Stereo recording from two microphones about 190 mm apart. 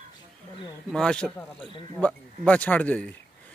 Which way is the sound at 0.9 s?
5° left (ahead or behind).